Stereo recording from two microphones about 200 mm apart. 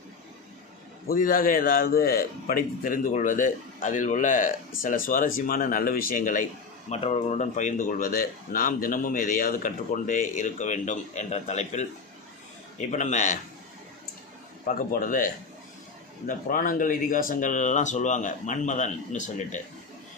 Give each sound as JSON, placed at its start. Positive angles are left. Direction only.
{"t": 1.0, "sound": "a man's voice", "side_deg": 45}
{"t": 12.9, "sound": "speech", "side_deg": 35}
{"t": 14.7, "sound": "speech", "side_deg": 40}